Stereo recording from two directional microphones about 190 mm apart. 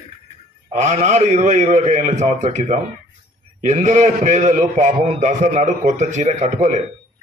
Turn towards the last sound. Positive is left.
turn(degrees=-40)  # may be behind; listen again after turning